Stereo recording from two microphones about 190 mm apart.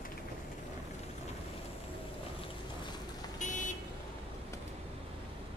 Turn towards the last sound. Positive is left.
turn(degrees=40)  # may be behind; listen again after turning